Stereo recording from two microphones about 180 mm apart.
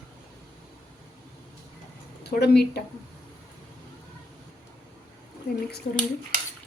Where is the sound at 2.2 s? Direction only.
65° left (ahead or behind).